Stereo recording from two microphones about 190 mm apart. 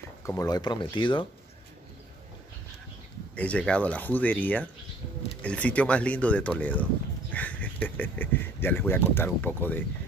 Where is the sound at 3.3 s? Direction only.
5° left (ahead or behind).